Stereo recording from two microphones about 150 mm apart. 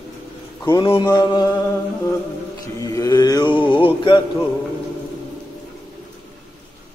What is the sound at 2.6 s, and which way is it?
Mantra, 20° left (ahead or behind).